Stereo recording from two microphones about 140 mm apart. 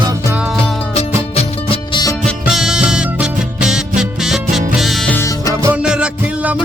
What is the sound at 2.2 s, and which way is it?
Music, centre (ahead or behind).